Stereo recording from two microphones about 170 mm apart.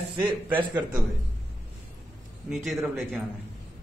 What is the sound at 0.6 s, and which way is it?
Speech, 25° right (ahead or behind).